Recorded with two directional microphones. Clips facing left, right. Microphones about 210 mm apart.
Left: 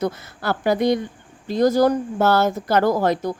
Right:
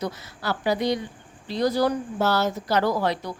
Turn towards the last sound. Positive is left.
turn(degrees=45)  # may be behind; listen again after turning